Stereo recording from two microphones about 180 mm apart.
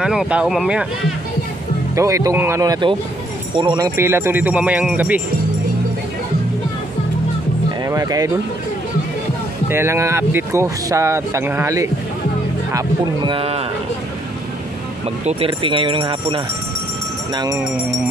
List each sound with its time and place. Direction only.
0.0 s speech: 5° right (ahead or behind)
2.0 s speech: 15° right (ahead or behind)
7.8 s speech: 20° right (ahead or behind)
9.7 s speech: 15° right (ahead or behind); by 13.7 s 35° right (ahead or behind)
15.0 s speech: 30° right (ahead or behind)